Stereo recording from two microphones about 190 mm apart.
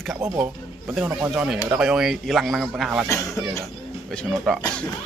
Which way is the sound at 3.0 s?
15° left (ahead or behind).